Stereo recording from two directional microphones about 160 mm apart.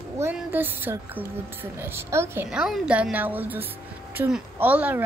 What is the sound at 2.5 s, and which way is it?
A woman's voice, 5° right (ahead or behind).